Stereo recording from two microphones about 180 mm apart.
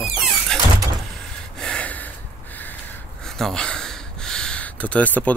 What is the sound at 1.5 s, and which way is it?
Gasp, 5° left (ahead or behind).